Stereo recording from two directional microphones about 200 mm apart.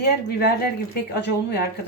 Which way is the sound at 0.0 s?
55° left (ahead or behind).